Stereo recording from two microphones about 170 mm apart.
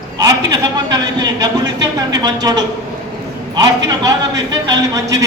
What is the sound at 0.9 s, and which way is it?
Speech, 25° right (ahead or behind).